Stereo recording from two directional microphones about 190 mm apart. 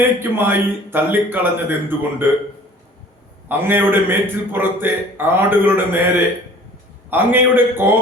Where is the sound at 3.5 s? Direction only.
10° right (ahead or behind).